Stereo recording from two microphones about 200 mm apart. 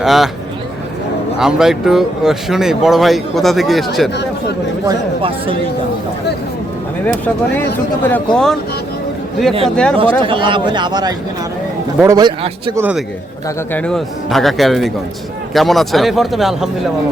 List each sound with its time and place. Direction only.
0.0 s speech: centre (ahead or behind)
1.4 s speech: 5° right (ahead or behind)
4.9 s speech: 25° right (ahead or behind)
8.0 s speech: 5° left (ahead or behind)
9.6 s speech: 5° left (ahead or behind)
10.0 s speech: 25° right (ahead or behind)
12.7 s a man's voice: 10° right (ahead or behind)
13.7 s speech: 5° left (ahead or behind)